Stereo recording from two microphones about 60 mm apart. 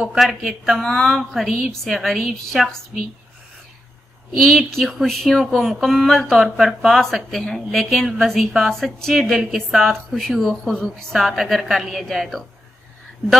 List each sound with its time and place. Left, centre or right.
0.1 s speech: centre
4.4 s speech: centre
11.1 s speech: centre